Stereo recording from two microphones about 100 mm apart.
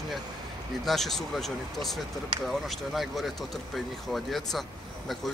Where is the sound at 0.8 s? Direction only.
5° left (ahead or behind).